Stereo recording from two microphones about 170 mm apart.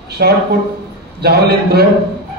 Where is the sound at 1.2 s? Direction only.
70° right (ahead or behind).